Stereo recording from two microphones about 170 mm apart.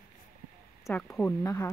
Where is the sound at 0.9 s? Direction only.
10° left (ahead or behind).